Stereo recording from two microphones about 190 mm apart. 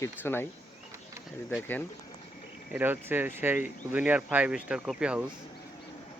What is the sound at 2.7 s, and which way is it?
Speech, 10° right (ahead or behind).